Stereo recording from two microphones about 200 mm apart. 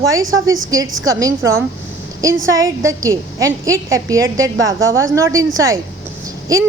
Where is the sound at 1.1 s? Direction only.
15° right (ahead or behind).